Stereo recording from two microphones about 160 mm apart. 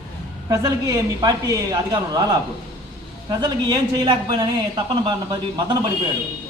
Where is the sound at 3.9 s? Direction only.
30° right (ahead or behind).